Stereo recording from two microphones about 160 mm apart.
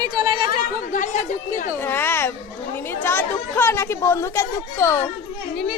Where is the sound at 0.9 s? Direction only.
50° left (ahead or behind).